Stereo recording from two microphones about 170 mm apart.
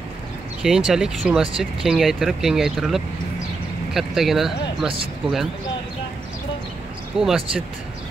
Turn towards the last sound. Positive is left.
turn(degrees=-5)  # may be behind; listen again after turning